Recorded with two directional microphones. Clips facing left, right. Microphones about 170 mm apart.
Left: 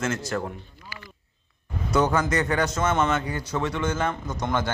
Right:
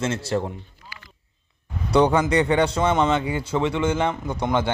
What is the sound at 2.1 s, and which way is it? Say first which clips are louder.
Speech: right 4 dB; 15° right (ahead or behind).